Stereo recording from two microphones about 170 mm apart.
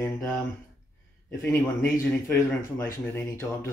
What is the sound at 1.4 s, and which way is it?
A man's voice, 15° left (ahead or behind).